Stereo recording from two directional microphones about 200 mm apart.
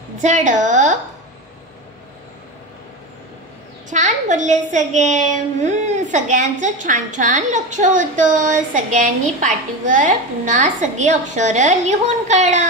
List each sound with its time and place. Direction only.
0.2 s a woman's voice: 40° right (ahead or behind)
3.9 s a child's voice: 35° right (ahead or behind)